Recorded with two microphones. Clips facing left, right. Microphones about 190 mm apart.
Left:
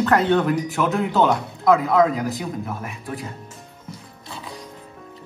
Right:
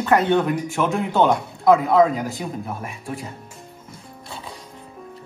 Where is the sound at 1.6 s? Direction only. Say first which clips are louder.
Right 2 dB; 25° right (ahead or behind).